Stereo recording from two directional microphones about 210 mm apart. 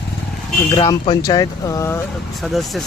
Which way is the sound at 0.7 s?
20° left (ahead or behind).